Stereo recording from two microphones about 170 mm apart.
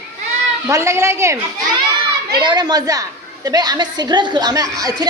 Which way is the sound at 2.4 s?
25° right (ahead or behind).